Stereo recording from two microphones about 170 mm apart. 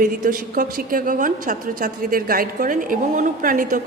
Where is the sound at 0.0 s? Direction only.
55° right (ahead or behind).